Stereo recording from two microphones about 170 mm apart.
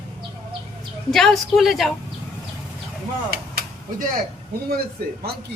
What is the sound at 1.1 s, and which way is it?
Speech, centre (ahead or behind).